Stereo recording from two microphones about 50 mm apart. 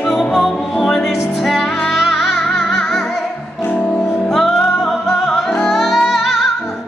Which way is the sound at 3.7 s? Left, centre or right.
Left.